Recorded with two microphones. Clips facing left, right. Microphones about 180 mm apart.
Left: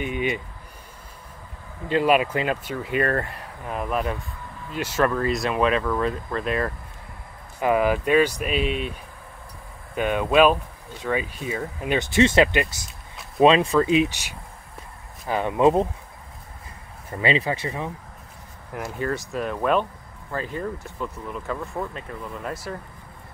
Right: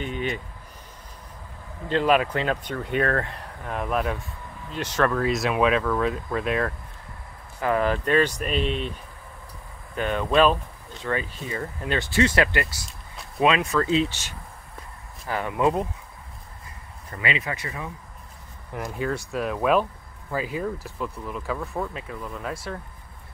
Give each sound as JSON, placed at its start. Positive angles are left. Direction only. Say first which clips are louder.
{"t": 0.0, "sound": "speech", "louder": "left 3 dB", "side_deg": 10}
{"t": 1.9, "sound": "speech", "louder": "left 1 dB", "side_deg": 10}
{"t": 7.6, "sound": "speech", "louder": "left 3 dB", "side_deg": 10}
{"t": 9.9, "sound": "speech", "louder": "left 2 dB", "side_deg": 10}
{"t": 13.4, "sound": "speech", "louder": "left 5 dB", "side_deg": 30}
{"t": 13.7, "sound": "speech", "louder": "left 3 dB", "side_deg": 15}
{"t": 17.2, "sound": "speech", "louder": "left 6 dB", "side_deg": 30}
{"t": 18.7, "sound": "speech", "louder": "left 1 dB", "side_deg": 0}